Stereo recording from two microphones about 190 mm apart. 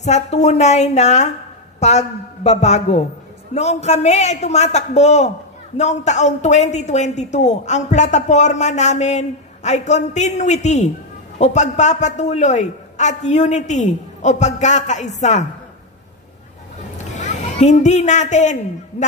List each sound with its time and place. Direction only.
0.0 s a woman's voice: 35° left (ahead or behind)
17.0 s a woman's voice: 40° left (ahead or behind)